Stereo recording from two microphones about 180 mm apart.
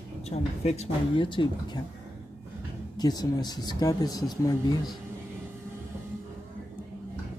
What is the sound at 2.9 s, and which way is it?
Speech, 20° left (ahead or behind).